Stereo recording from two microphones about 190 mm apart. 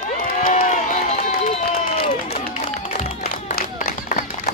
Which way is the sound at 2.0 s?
35° left (ahead or behind).